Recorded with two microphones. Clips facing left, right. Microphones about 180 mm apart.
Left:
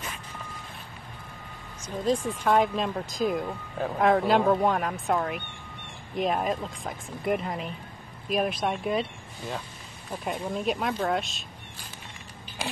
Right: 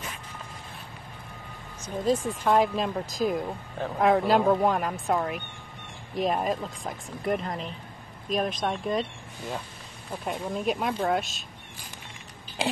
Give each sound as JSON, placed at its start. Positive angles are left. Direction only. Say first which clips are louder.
{"t": 2.0, "sound": "speech", "louder": "even", "side_deg": 0}
{"t": 10.2, "sound": "speech", "louder": "even", "side_deg": 0}